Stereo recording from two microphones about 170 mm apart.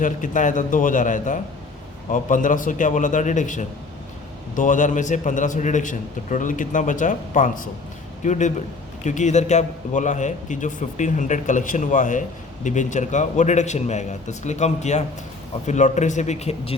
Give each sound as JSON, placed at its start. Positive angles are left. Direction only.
{"t": 0.0, "sound": "a man's voice", "side_deg": 50}